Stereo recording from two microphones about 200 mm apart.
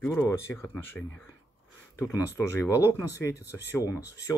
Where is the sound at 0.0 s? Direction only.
10° left (ahead or behind).